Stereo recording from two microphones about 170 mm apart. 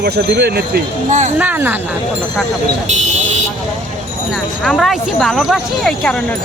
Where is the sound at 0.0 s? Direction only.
65° right (ahead or behind).